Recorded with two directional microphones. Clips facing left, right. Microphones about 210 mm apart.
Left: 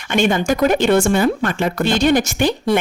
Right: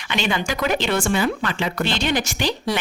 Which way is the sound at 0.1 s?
45° left (ahead or behind).